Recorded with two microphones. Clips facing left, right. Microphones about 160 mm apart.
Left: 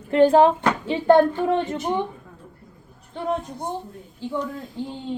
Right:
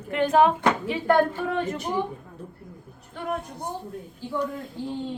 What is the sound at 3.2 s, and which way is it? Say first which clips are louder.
Speech: left 5 dB; 30° left (ahead or behind).